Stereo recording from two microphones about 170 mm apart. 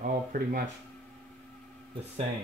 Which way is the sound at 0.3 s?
55° right (ahead or behind).